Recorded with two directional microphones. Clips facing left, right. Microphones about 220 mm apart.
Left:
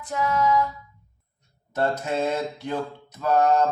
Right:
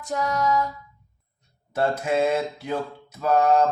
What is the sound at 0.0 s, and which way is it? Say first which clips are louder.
Female singing: left 1 dB; 40° right (ahead or behind).